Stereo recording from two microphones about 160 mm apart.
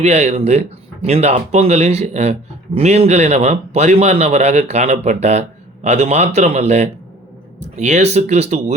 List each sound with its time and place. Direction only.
0.0 s a man's voice: 45° right (ahead or behind)